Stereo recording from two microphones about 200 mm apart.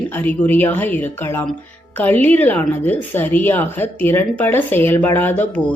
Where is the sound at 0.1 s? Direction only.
10° left (ahead or behind).